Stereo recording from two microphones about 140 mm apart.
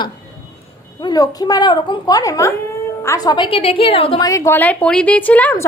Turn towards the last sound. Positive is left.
turn(degrees=15)  # may be behind; listen again after turning